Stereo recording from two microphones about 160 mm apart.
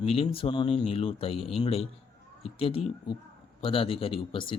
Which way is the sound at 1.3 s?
Centre (ahead or behind).